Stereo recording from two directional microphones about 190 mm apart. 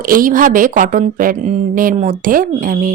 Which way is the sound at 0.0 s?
45° right (ahead or behind).